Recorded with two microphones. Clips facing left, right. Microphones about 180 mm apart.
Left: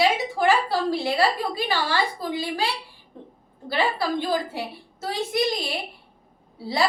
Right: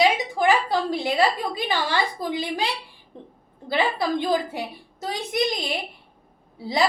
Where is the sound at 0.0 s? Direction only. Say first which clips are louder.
Right 1 dB; 20° right (ahead or behind).